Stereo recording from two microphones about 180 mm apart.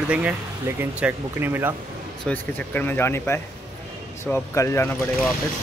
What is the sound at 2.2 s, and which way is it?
Speech, 10° left (ahead or behind).